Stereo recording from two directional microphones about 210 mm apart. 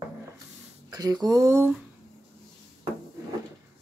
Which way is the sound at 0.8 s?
20° right (ahead or behind).